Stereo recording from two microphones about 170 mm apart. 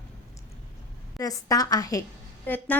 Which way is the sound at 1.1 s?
20° left (ahead or behind).